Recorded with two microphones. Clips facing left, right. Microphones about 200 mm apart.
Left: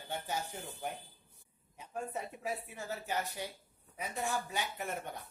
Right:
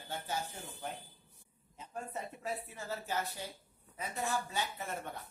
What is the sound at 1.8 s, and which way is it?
A woman's voice, 15° left (ahead or behind).